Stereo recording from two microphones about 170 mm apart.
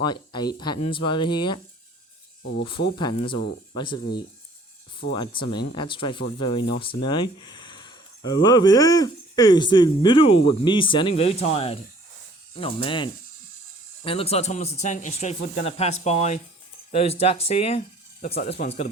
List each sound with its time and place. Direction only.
0.0 s speech: 25° left (ahead or behind)
2.6 s speech: 30° left (ahead or behind)
5.1 s speech: 30° left (ahead or behind)